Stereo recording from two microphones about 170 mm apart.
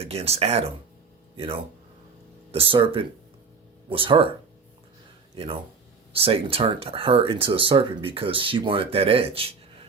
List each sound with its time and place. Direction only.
0.0 s speech: 35° right (ahead or behind)
2.5 s speech: 35° right (ahead or behind)
6.1 s speech: 35° right (ahead or behind)